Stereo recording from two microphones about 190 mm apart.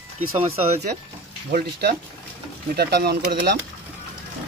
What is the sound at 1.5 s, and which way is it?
Speech, 55° right (ahead or behind).